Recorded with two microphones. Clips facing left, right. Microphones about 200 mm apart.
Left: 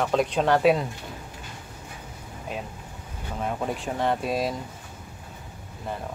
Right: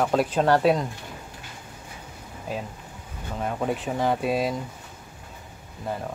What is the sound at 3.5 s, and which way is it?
Speech, centre (ahead or behind).